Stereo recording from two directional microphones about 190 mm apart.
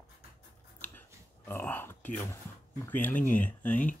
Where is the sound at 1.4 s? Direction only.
10° left (ahead or behind).